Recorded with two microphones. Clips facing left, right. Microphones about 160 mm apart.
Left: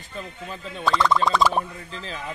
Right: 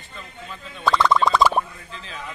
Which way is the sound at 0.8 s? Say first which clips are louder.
Right 2 dB; 60° right (ahead or behind).